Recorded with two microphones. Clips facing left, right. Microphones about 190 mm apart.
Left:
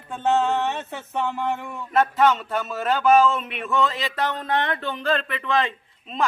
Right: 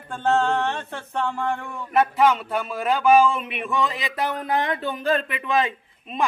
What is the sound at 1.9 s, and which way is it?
Speech, 10° right (ahead or behind).